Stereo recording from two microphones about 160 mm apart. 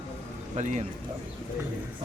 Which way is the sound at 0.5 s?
50° right (ahead or behind).